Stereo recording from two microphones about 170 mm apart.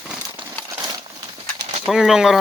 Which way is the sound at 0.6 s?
20° right (ahead or behind).